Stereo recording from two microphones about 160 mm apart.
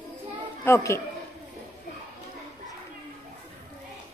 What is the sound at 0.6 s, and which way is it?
Speech, 15° left (ahead or behind).